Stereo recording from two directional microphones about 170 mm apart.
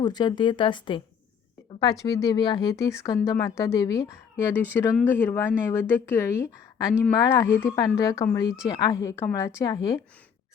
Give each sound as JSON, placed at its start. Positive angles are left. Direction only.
{"t": 0.0, "sound": "speech", "side_deg": 25}
{"t": 2.0, "sound": "speech", "side_deg": 20}